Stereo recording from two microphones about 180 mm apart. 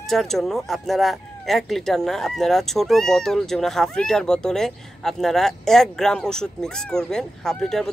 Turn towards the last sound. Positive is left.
turn(degrees=5)  # may be behind; listen again after turning